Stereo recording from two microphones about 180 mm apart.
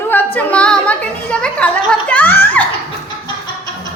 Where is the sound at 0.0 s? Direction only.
10° left (ahead or behind).